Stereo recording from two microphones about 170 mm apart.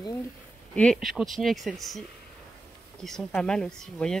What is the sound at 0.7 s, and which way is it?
Speech, 5° left (ahead or behind).